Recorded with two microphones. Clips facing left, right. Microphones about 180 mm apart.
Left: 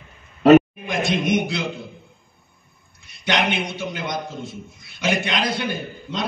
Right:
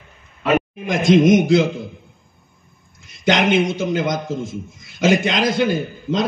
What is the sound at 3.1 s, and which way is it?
A man's voice, 45° right (ahead or behind).